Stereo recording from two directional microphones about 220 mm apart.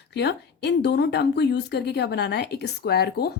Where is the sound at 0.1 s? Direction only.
50° left (ahead or behind).